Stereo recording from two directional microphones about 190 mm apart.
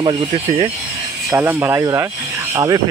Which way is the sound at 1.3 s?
10° right (ahead or behind).